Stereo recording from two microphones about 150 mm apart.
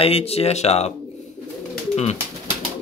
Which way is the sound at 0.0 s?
40° left (ahead or behind).